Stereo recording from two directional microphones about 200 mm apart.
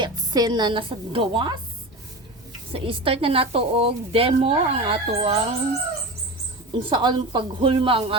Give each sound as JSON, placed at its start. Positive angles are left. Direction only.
{"t": 0.0, "sound": "speech", "side_deg": -20}
{"t": 2.7, "sound": "a woman's voice", "side_deg": -30}
{"t": 6.7, "sound": "a woman's voice", "side_deg": -25}